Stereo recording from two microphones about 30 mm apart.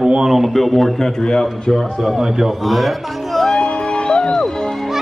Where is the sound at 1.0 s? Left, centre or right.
Left.